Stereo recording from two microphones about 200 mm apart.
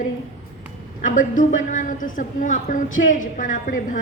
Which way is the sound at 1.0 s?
40° left (ahead or behind).